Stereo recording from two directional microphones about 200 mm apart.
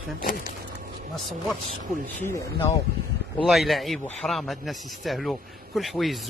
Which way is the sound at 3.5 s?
Centre (ahead or behind).